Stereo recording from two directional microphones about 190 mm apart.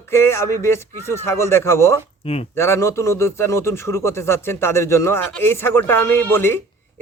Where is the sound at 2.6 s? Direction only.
15° left (ahead or behind).